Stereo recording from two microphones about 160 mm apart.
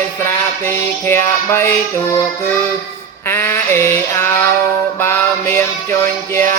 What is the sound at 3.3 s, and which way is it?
Music, 15° left (ahead or behind).